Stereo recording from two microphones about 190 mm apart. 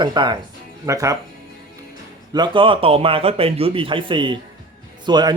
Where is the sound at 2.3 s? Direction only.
25° right (ahead or behind).